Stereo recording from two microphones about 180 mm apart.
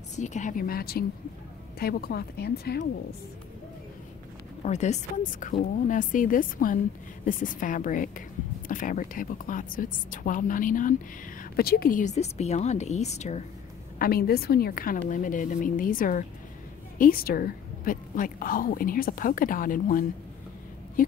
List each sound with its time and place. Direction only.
0.1 s a woman's voice: 40° left (ahead or behind); by 2.9 s 60° left (ahead or behind)
4.6 s a woman's voice: 40° left (ahead or behind)
11.5 s speech: 60° left (ahead or behind); by 13.4 s 40° left (ahead or behind)
13.9 s a woman's voice: 55° left (ahead or behind)